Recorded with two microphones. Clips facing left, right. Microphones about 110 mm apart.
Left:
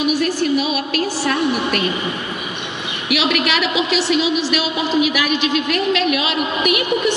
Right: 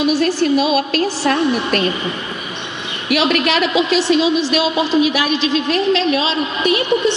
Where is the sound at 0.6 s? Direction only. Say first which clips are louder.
Right 4 dB; 35° right (ahead or behind).